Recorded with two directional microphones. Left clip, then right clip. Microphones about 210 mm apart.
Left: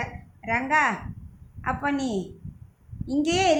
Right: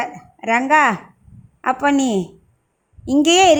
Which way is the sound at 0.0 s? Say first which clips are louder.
Right 10 dB; 45° right (ahead or behind).